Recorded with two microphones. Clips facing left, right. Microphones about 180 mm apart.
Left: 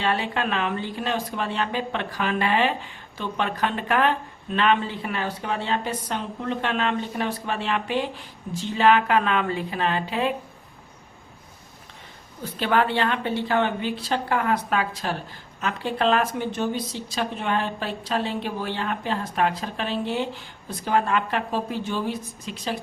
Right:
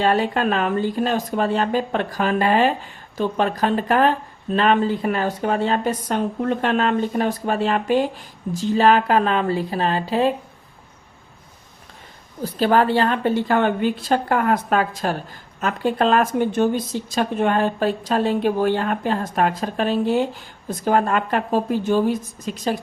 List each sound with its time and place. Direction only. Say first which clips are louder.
0.0 s speech: right 6 dB; 45° right (ahead or behind)
12.4 s speech: right 5 dB; 40° right (ahead or behind)